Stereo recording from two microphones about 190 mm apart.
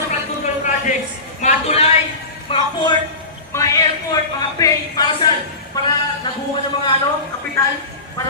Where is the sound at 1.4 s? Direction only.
35° left (ahead or behind).